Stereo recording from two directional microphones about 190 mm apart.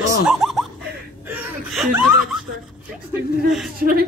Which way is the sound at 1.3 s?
Centre (ahead or behind).